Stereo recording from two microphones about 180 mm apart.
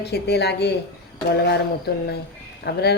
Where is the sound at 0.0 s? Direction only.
65° left (ahead or behind).